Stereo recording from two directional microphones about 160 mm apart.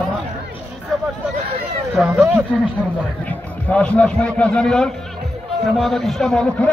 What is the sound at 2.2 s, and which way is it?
Speech, 10° right (ahead or behind).